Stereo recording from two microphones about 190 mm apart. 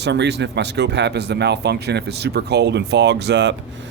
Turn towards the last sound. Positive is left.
turn(degrees=-65)  # may be behind; listen again after turning